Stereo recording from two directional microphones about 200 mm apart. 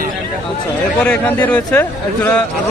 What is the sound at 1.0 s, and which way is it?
A man's voice, 10° left (ahead or behind).